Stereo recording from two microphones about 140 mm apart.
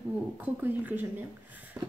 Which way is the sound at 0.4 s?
15° right (ahead or behind).